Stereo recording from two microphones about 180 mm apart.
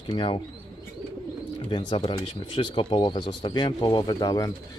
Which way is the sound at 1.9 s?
30° left (ahead or behind).